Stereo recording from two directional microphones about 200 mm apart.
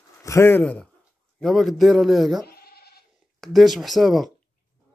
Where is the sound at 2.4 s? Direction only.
50° left (ahead or behind).